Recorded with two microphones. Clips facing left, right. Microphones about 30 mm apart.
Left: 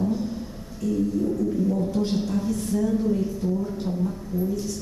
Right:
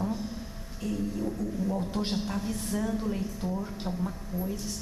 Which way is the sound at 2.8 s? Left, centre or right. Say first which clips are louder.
Left 8 dB; centre.